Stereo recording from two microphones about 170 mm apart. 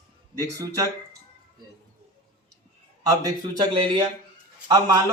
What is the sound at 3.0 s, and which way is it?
Speech, 20° right (ahead or behind).